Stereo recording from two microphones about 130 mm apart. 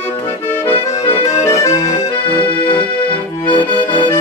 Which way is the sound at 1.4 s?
25° left (ahead or behind).